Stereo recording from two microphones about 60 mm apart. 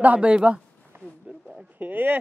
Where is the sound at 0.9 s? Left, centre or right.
Right.